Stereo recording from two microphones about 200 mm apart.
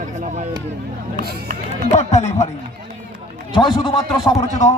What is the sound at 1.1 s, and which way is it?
Speech, 50° right (ahead or behind).